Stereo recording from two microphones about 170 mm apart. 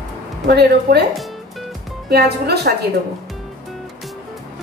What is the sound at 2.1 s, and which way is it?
Speech, 70° right (ahead or behind).